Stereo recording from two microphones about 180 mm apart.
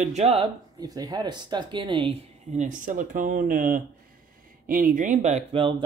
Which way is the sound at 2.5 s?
45° right (ahead or behind).